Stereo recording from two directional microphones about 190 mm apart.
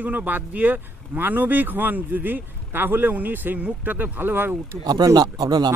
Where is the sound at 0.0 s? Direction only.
10° right (ahead or behind).